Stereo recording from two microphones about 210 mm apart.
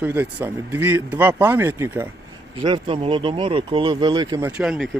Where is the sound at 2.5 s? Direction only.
25° right (ahead or behind).